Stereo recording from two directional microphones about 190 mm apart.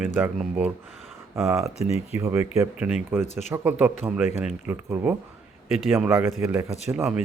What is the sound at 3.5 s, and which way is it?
Speech, 10° right (ahead or behind).